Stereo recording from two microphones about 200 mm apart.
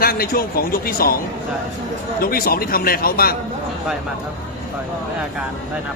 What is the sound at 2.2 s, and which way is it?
A man's voice, 50° left (ahead or behind).